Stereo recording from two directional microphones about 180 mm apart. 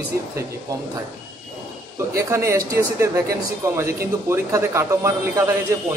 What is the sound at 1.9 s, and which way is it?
Speech, 15° right (ahead or behind).